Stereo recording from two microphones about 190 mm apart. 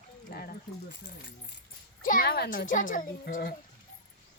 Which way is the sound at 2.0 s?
45° left (ahead or behind).